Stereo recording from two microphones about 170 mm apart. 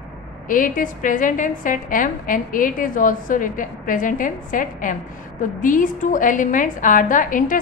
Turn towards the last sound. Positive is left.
turn(degrees=50)  # may be behind; listen again after turning